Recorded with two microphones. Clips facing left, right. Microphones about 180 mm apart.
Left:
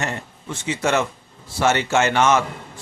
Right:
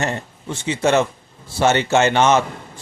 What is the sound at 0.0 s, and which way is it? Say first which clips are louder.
A man's voice: right 4 dB; 30° right (ahead or behind).